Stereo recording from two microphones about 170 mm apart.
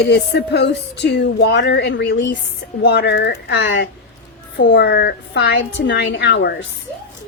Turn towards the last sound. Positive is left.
turn(degrees=90)